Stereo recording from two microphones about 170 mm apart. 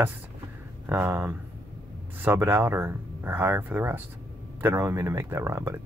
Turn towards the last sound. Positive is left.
turn(degrees=-15)  # may be behind; listen again after turning